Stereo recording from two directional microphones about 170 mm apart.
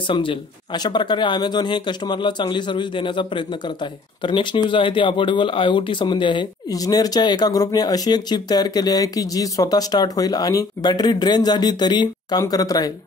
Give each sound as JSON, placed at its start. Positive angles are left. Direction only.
{"t": 0.1, "sound": "speech", "side_deg": 30}